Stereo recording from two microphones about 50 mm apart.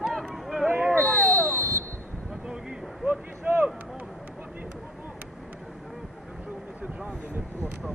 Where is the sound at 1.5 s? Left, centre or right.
Right.